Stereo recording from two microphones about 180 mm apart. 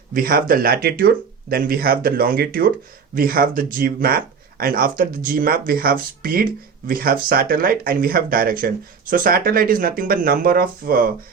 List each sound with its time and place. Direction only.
0.1 s speech: 55° right (ahead or behind)